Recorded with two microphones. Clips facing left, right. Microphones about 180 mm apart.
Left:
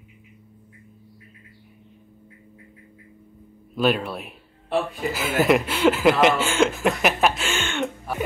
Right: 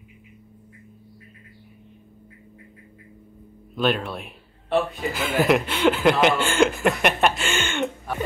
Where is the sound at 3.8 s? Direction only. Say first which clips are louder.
Left 2 dB; 5° left (ahead or behind).